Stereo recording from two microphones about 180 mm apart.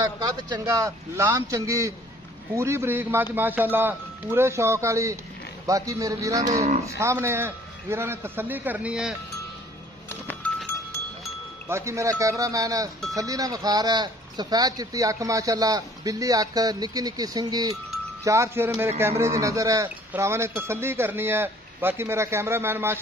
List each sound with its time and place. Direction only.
0.0 s speech: 20° right (ahead or behind); by 9.1 s 5° right (ahead or behind)
10.0 s music: 10° left (ahead or behind)
11.7 s speech: 15° right (ahead or behind)